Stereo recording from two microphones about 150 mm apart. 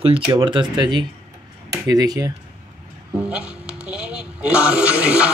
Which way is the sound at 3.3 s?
5° right (ahead or behind).